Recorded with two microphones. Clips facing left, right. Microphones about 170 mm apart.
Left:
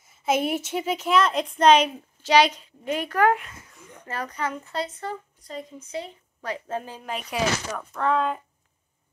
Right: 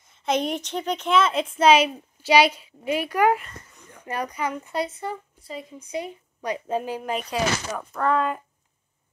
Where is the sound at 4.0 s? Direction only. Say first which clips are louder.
Right 2 dB; 15° right (ahead or behind).